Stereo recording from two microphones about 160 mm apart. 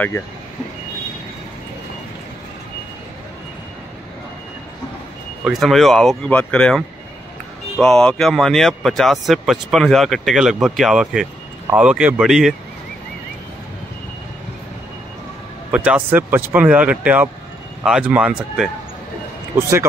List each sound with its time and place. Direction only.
5.4 s speech: centre (ahead or behind)
15.7 s speech: 10° right (ahead or behind)